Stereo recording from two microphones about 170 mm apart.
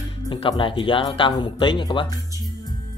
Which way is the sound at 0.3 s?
30° left (ahead or behind).